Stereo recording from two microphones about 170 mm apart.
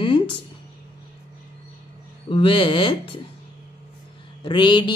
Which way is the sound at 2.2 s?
30° left (ahead or behind).